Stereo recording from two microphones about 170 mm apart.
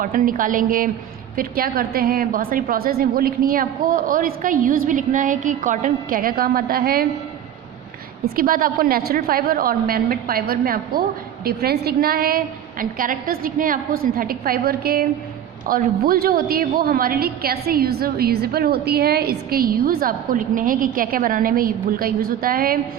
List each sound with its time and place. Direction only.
0.0 s a woman's voice: 55° right (ahead or behind)
8.4 s a woman's voice: 55° right (ahead or behind)